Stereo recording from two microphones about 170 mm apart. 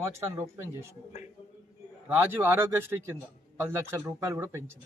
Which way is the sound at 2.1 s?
10° right (ahead or behind).